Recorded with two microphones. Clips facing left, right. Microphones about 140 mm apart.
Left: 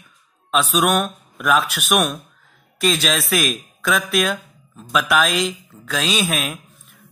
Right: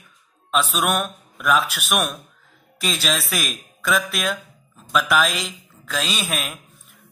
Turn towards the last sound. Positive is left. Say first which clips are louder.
# left 5 dB
turn(degrees=0)  # may be behind; listen again after turning